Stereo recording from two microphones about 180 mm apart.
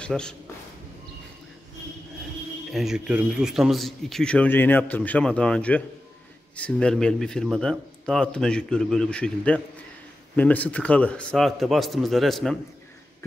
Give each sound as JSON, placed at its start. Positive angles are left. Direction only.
{"t": 0.0, "sound": "speech", "side_deg": 5}
{"t": 2.7, "sound": "speech", "side_deg": 0}